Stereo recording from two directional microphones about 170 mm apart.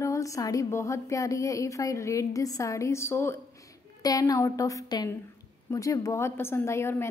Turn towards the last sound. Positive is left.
turn(degrees=15)  # may be behind; listen again after turning